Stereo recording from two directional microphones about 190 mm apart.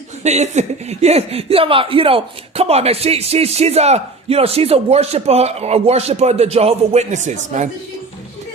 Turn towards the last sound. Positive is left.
turn(degrees=-40)  # may be behind; listen again after turning